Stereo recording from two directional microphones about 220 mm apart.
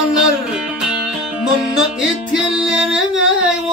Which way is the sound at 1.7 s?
5° right (ahead or behind).